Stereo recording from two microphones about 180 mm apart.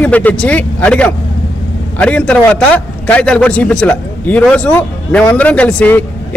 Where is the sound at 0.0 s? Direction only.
10° left (ahead or behind).